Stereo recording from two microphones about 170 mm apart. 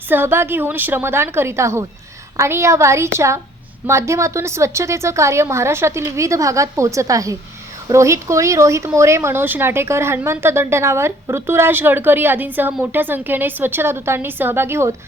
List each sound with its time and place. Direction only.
0.1 s speech: 15° right (ahead or behind)